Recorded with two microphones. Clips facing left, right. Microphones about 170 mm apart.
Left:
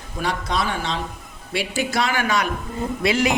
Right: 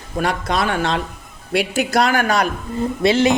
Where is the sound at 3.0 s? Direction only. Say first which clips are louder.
Right 5 dB; 25° right (ahead or behind).